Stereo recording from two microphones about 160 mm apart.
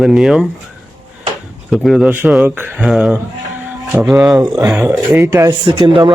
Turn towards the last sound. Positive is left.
turn(degrees=-30)  # may be behind; listen again after turning